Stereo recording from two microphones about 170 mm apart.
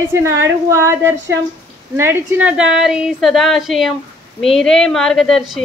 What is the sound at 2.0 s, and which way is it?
A woman's voice, 10° right (ahead or behind).